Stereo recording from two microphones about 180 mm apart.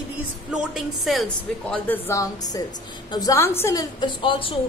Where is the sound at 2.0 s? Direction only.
15° left (ahead or behind).